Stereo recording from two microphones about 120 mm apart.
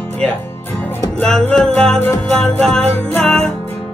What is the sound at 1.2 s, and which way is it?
Music, 5° left (ahead or behind).